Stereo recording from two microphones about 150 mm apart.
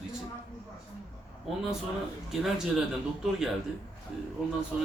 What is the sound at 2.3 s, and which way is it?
Speech, 5° right (ahead or behind).